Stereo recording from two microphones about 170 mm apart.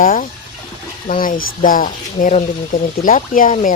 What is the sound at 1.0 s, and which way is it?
Speech, 50° left (ahead or behind).